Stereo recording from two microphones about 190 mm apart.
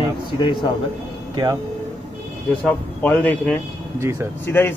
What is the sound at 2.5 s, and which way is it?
Speech, 5° left (ahead or behind).